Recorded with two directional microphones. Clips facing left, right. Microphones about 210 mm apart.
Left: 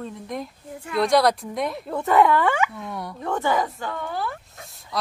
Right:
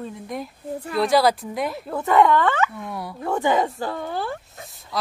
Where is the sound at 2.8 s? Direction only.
Centre (ahead or behind).